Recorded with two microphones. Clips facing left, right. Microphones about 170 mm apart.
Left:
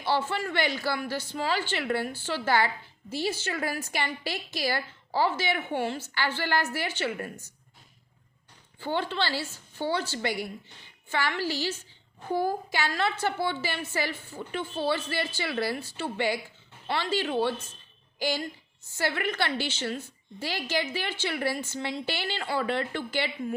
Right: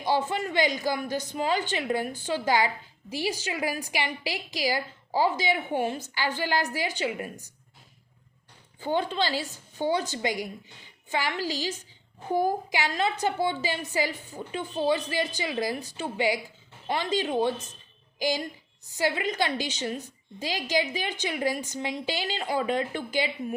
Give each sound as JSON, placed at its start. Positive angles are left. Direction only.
{"t": 0.0, "sound": "speech", "side_deg": -15}
{"t": 8.8, "sound": "a woman's voice", "side_deg": -15}